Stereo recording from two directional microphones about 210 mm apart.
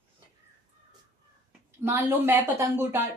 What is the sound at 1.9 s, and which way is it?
Speech, 10° right (ahead or behind).